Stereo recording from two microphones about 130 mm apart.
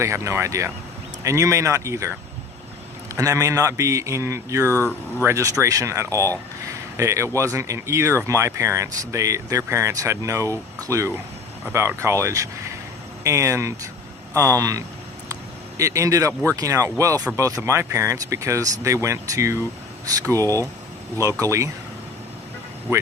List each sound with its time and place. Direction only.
0.0 s speech: 20° right (ahead or behind)
3.2 s speech: 25° right (ahead or behind)
4.6 s speech: 15° left (ahead or behind)
5.2 s speech: 25° right (ahead or behind)